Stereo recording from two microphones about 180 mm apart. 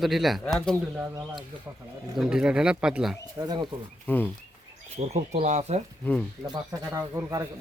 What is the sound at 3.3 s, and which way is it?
Speech, 20° right (ahead or behind).